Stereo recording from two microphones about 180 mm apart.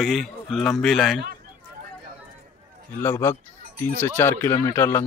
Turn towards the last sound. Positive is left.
turn(degrees=15)  # may be behind; listen again after turning